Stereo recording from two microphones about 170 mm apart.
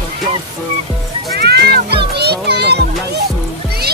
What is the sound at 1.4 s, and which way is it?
Music, 65° right (ahead or behind).